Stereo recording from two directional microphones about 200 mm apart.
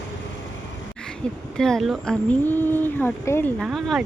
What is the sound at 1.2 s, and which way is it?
Speech, 5° left (ahead or behind).